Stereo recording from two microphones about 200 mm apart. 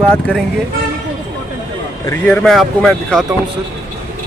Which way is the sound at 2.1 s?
10° left (ahead or behind).